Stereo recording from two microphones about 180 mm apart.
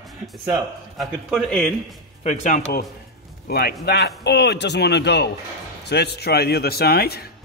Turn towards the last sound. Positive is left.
turn(degrees=60)  # may be behind; listen again after turning